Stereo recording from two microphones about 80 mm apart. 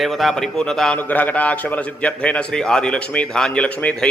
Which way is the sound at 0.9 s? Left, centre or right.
Left.